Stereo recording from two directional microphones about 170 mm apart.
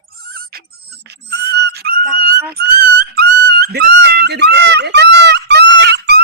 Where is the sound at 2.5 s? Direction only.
65° right (ahead or behind).